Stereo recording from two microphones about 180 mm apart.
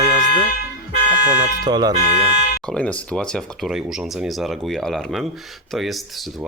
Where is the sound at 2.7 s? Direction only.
5° left (ahead or behind).